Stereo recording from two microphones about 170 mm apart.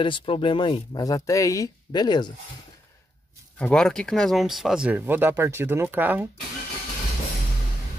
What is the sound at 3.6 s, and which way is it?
Speech, 5° left (ahead or behind).